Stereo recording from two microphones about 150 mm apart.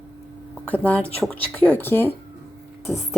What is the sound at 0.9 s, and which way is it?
Speech, 10° left (ahead or behind).